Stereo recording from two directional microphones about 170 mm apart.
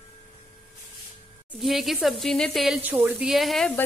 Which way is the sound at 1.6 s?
Centre (ahead or behind).